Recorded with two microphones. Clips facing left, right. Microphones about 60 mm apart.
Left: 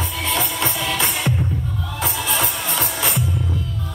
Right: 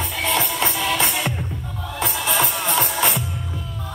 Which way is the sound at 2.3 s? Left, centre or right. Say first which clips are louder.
Right 2 dB; right.